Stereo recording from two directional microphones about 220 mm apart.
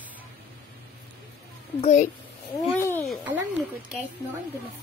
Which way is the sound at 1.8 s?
30° left (ahead or behind).